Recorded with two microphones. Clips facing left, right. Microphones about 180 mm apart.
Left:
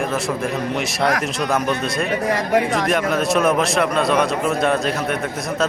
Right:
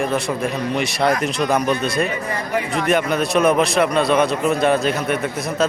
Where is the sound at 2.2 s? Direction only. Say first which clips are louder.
Left 5 dB; 90° left.